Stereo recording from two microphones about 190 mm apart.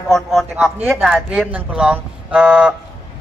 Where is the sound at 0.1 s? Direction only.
Centre (ahead or behind).